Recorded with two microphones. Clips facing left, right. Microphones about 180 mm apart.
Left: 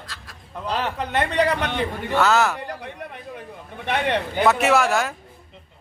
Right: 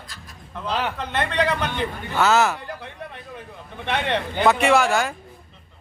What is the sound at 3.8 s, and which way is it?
A man's voice, 10° left (ahead or behind).